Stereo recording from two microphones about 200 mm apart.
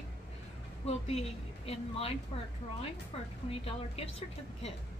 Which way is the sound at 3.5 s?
30° left (ahead or behind).